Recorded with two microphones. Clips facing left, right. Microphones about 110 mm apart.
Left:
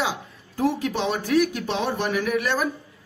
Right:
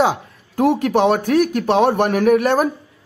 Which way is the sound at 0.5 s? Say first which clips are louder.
Right 8 dB; 65° right (ahead or behind).